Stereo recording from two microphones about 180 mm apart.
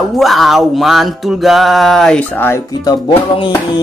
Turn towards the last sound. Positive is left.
turn(degrees=30)  # may be behind; listen again after turning